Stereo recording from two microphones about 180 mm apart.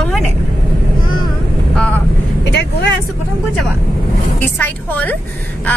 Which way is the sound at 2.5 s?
70° left (ahead or behind).